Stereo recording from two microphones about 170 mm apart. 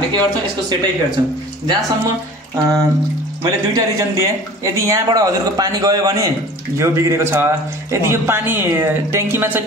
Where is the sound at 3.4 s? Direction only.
20° right (ahead or behind).